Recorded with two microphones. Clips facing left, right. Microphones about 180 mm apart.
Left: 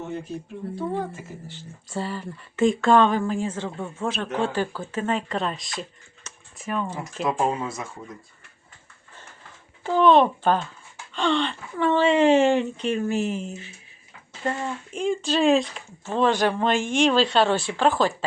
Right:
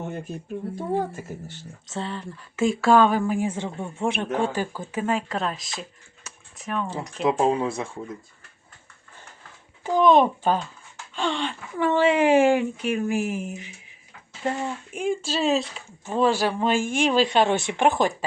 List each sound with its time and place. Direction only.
0.8 s a woman's voice: 45° right (ahead or behind)
1.9 s speech: 5° left (ahead or behind)
7.3 s speech: 20° right (ahead or behind)
9.8 s speech: 15° right (ahead or behind)
14.9 s speech: 10° right (ahead or behind)